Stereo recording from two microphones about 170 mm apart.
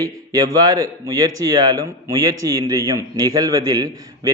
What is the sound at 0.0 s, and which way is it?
A man's voice, 20° right (ahead or behind).